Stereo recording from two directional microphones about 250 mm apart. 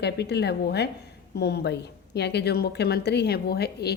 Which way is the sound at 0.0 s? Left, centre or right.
Left.